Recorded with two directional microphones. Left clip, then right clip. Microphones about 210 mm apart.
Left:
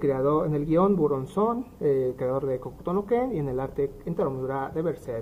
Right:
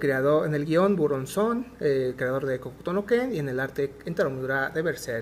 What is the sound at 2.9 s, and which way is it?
Speech, 45° right (ahead or behind).